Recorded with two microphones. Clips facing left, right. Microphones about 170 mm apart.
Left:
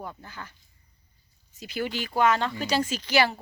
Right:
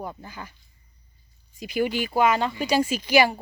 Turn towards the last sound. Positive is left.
turn(degrees=-15)  # may be behind; listen again after turning